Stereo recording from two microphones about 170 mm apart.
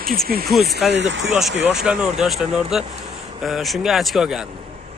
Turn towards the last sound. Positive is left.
turn(degrees=0)  # may be behind; listen again after turning